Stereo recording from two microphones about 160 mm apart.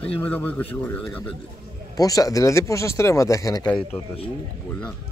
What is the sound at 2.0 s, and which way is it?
Speech, 20° left (ahead or behind).